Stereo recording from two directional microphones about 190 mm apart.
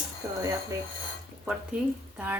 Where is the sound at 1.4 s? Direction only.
5° right (ahead or behind).